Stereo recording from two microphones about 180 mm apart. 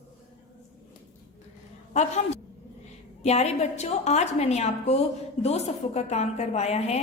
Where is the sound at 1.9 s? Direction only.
40° left (ahead or behind).